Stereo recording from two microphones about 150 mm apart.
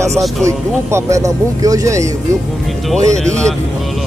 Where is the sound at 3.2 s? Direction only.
5° left (ahead or behind).